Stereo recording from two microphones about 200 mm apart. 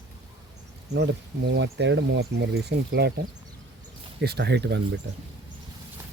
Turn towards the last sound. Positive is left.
turn(degrees=-55)  # may be behind; listen again after turning